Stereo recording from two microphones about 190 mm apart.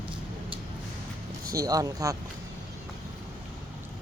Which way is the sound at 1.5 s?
20° right (ahead or behind).